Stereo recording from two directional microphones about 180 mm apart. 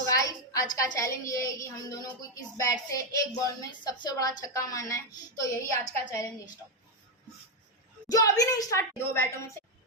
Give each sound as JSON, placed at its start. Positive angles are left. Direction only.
{"t": 0.0, "sound": "a sound", "side_deg": 20}
{"t": 0.9, "sound": "speech", "side_deg": 15}
{"t": 8.1, "sound": "a woman's voice", "side_deg": 20}